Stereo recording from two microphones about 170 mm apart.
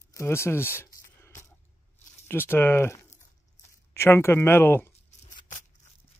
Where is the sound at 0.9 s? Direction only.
15° left (ahead or behind).